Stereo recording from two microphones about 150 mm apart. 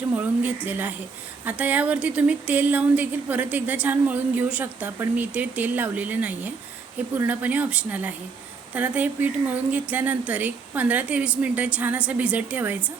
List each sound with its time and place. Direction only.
0.2 s speech: 10° right (ahead or behind)